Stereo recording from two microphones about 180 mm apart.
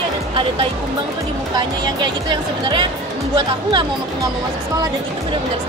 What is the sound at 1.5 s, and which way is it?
Speech, 25° right (ahead or behind).